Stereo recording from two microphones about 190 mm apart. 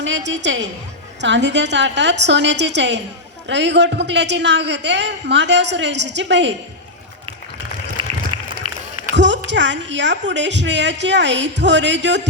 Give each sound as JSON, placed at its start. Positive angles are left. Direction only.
{"t": 0.0, "sound": "a woman's voice", "side_deg": -70}
{"t": 8.0, "sound": "a sound", "side_deg": -25}
{"t": 9.1, "sound": "a man's voice", "side_deg": -70}